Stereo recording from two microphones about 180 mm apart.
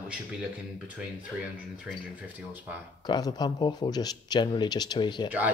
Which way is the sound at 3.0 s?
25° left (ahead or behind).